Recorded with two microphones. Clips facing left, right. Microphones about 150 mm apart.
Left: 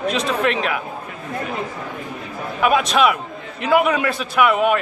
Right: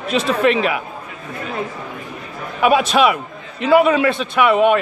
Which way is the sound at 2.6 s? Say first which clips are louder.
Right 3 dB; centre (ahead or behind).